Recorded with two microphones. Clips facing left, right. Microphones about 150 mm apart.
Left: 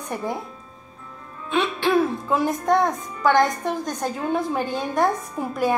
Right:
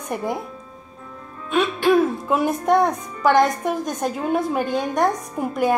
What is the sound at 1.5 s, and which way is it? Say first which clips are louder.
Music: right 3 dB; 15° right (ahead or behind).